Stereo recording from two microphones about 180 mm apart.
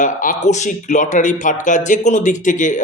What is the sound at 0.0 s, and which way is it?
A man's voice, 45° left (ahead or behind).